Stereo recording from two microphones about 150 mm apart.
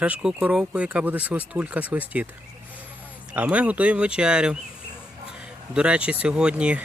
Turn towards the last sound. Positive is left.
turn(degrees=-10)  # may be behind; listen again after turning